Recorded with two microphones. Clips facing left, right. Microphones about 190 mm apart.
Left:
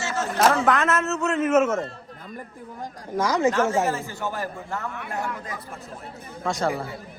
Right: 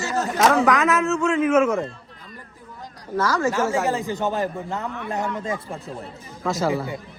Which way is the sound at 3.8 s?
15° right (ahead or behind).